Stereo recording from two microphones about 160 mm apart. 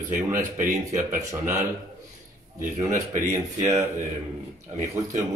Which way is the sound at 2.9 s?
50° right (ahead or behind).